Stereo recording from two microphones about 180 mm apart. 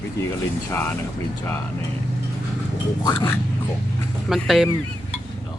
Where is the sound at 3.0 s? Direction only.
25° left (ahead or behind).